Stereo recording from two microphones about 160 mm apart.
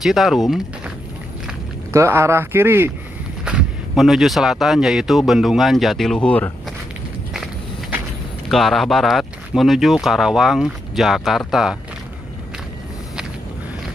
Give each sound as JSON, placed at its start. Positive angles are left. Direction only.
{"t": 0.0, "sound": "speech", "side_deg": 0}
{"t": 1.9, "sound": "speech", "side_deg": -15}
{"t": 3.4, "sound": "speech", "side_deg": -5}
{"t": 8.5, "sound": "speech", "side_deg": 0}